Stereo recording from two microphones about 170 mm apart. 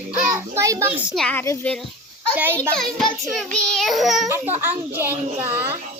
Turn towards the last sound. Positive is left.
turn(degrees=-10)  # may be behind; listen again after turning